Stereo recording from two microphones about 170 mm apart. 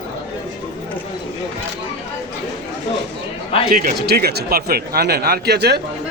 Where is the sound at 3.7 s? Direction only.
65° right (ahead or behind).